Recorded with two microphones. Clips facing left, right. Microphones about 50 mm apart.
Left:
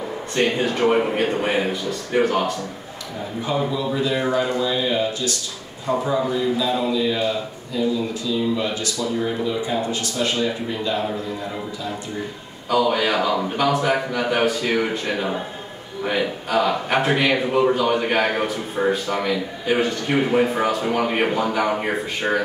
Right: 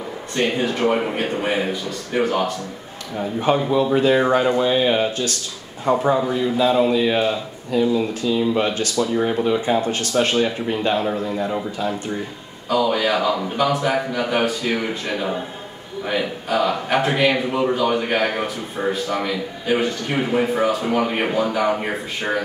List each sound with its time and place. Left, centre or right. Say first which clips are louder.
0.4 s a man's voice: even; centre
3.7 s speech: right 6 dB; right
12.6 s a man's voice: even; centre